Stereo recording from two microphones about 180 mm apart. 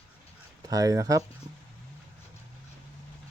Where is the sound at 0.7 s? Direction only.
20° right (ahead or behind).